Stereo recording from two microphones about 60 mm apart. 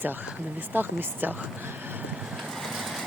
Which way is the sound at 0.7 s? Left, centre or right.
Right.